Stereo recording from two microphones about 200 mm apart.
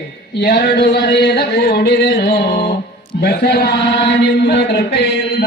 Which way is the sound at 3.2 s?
55° left (ahead or behind).